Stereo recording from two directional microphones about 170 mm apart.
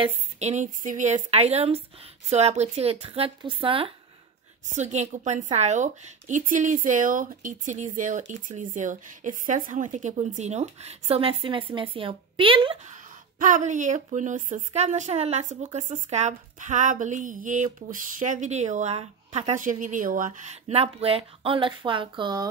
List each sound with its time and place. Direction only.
0.0 s a woman's voice: 40° right (ahead or behind)
4.7 s a woman's voice: 45° right (ahead or behind)
12.8 s speech: 45° right (ahead or behind); by 22.5 s 25° right (ahead or behind)